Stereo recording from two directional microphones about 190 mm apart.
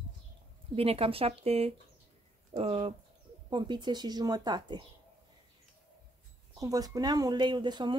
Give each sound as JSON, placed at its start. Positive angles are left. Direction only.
{"t": 0.7, "sound": "speech", "side_deg": -30}
{"t": 6.6, "sound": "speech", "side_deg": -20}